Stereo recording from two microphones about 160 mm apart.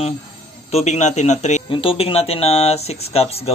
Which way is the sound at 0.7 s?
45° left (ahead or behind).